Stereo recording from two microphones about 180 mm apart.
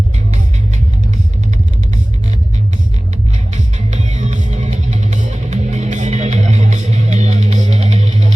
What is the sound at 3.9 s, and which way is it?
Music, 40° right (ahead or behind).